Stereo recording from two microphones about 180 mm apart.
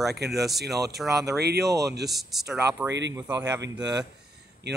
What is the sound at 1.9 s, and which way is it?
Speech, 65° right (ahead or behind).